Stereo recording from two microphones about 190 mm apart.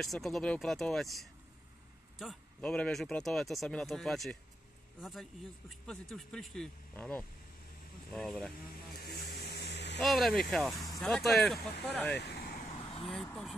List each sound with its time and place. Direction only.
0.0 s speech: centre (ahead or behind)
5.7 s speech: centre (ahead or behind)
8.7 s vehicle: 55° left (ahead or behind)
9.9 s speech: centre (ahead or behind)
12.1 s vehicle: 60° left (ahead or behind)
12.6 s vehicle: 30° left (ahead or behind)
13.1 s speech: centre (ahead or behind)